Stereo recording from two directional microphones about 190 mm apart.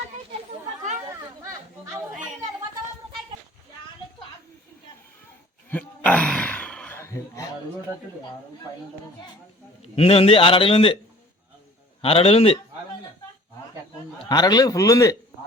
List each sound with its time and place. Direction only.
1.4 s chatter: 15° right (ahead or behind)
5.7 s a sound: 5° left (ahead or behind)
9.8 s a man's voice: 30° left (ahead or behind)
12.0 s a man's voice: 30° left (ahead or behind)
14.3 s a man's voice: 20° left (ahead or behind)